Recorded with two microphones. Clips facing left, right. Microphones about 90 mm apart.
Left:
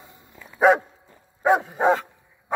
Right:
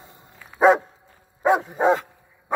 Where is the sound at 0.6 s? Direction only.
20° right (ahead or behind).